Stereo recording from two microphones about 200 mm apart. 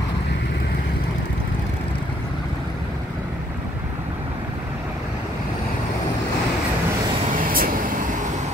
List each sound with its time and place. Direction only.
7.3 s vehicle: 45° right (ahead or behind)